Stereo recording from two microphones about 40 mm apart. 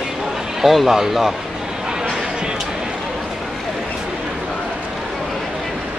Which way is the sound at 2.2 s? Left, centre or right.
Centre.